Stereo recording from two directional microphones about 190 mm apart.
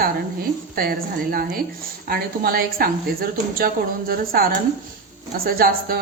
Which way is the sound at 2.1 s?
50° right (ahead or behind).